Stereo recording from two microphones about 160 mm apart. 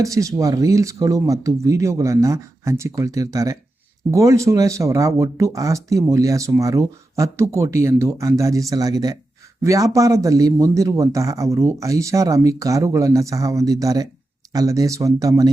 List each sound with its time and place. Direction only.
0.0 s speech: 20° right (ahead or behind)